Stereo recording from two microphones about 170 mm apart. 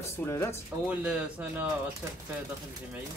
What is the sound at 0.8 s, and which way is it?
Speech, 5° right (ahead or behind).